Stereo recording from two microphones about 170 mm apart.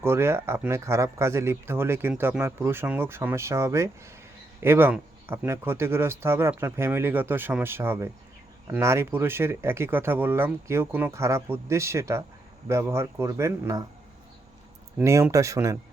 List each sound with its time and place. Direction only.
0.0 s speech: 15° right (ahead or behind)
14.9 s speech: 15° right (ahead or behind)